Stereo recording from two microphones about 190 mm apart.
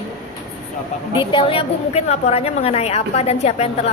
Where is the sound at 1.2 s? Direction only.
25° left (ahead or behind).